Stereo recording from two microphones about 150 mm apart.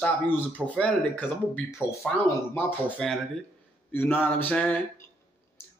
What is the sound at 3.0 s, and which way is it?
A man's voice, 5° left (ahead or behind).